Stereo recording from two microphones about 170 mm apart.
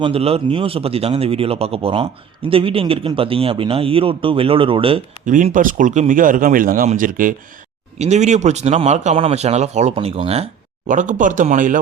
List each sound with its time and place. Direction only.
0.0 s speech: 35° right (ahead or behind)
5.2 s speech: 50° right (ahead or behind)
7.9 s speech: 40° right (ahead or behind)